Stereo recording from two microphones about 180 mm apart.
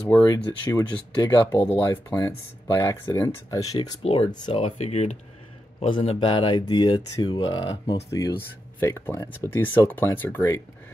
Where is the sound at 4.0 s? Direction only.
30° left (ahead or behind).